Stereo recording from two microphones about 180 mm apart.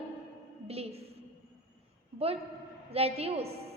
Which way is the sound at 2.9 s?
35° right (ahead or behind).